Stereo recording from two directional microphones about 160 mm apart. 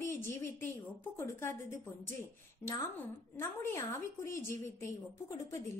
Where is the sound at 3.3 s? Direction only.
15° left (ahead or behind).